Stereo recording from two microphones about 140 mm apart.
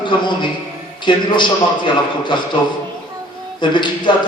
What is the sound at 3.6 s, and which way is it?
Speech, 35° left (ahead or behind).